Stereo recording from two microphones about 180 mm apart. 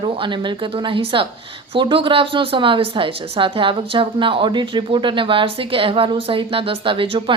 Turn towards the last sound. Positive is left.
turn(degrees=-30)  # may be behind; listen again after turning